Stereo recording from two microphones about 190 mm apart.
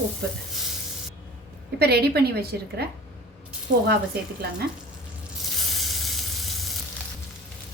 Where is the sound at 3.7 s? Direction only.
40° right (ahead or behind).